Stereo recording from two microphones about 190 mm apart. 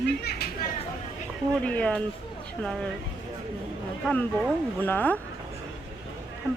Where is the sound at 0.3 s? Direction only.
55° left (ahead or behind).